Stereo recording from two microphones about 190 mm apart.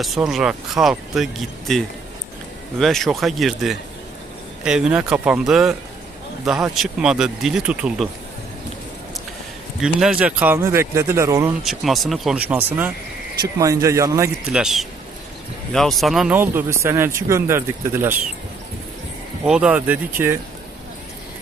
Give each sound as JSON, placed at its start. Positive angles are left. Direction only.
{"t": 0.0, "sound": "speech", "side_deg": 0}
{"t": 9.8, "sound": "speech", "side_deg": -5}
{"t": 11.6, "sound": "speech", "side_deg": 0}
{"t": 14.5, "sound": "speech", "side_deg": 0}
{"t": 19.5, "sound": "speech", "side_deg": -5}